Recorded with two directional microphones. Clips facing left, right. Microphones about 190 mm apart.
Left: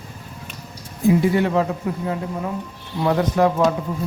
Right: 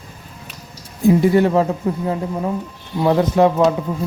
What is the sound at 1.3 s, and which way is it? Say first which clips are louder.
Speech: right 4 dB; 40° right (ahead or behind).